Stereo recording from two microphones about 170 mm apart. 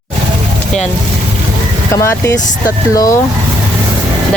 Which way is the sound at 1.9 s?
15° left (ahead or behind).